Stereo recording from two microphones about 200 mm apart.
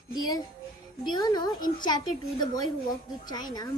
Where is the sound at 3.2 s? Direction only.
20° left (ahead or behind).